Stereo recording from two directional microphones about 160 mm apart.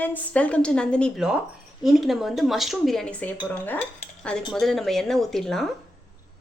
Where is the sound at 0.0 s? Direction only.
10° left (ahead or behind).